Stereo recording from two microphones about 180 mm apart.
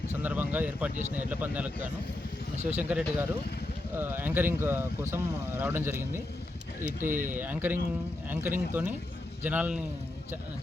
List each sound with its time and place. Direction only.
0.2 s speech: 10° right (ahead or behind)
6.8 s speech: 45° right (ahead or behind)
7.3 s speech: 10° right (ahead or behind)